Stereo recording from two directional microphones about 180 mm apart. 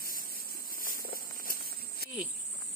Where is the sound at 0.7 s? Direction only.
50° left (ahead or behind).